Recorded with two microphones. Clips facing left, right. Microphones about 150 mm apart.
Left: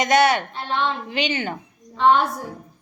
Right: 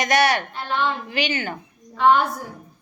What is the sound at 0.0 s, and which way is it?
Speech, 25° left (ahead or behind).